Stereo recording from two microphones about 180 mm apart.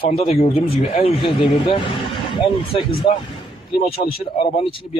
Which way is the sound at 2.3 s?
25° left (ahead or behind).